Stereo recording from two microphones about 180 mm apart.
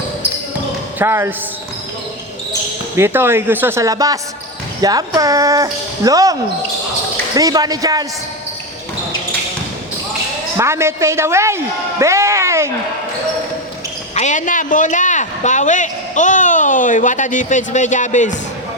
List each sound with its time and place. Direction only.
0.9 s speech: 15° right (ahead or behind)
2.9 s speech: 15° right (ahead or behind)
7.3 s speech: 20° right (ahead or behind)
10.6 s a man's voice: 15° right (ahead or behind)
14.2 s a sound: 45° left (ahead or behind)